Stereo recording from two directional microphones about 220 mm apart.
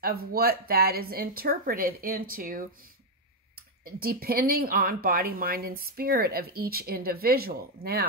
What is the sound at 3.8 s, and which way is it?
Speech, 45° right (ahead or behind).